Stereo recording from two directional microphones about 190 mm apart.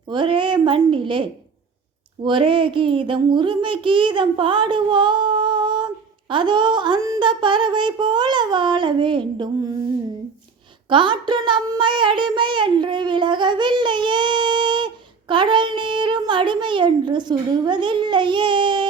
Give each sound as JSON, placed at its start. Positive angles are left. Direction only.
{"t": 0.1, "sound": "a woman's voice", "side_deg": -25}
{"t": 10.8, "sound": "child singing", "side_deg": -25}